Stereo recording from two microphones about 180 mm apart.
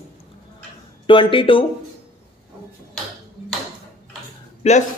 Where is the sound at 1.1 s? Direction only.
30° left (ahead or behind).